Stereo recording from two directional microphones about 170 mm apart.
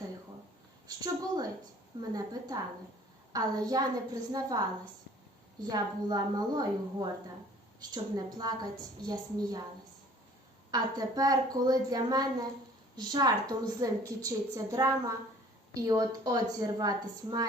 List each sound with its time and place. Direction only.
0.9 s a woman's voice: 20° right (ahead or behind)
5.6 s a woman's voice: 25° right (ahead or behind)
10.7 s a woman's voice: 20° right (ahead or behind)